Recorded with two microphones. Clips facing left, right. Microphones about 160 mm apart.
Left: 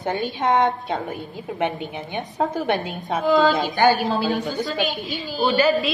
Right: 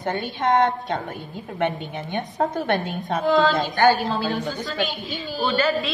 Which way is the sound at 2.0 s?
5° left (ahead or behind).